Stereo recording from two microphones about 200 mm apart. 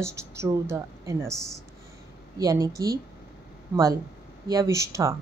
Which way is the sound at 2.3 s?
15° right (ahead or behind).